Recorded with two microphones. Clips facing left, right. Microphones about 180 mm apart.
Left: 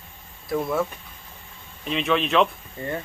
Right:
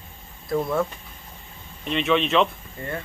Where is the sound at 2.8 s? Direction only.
20° left (ahead or behind).